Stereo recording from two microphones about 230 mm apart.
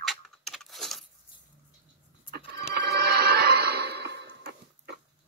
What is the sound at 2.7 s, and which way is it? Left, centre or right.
Music, right.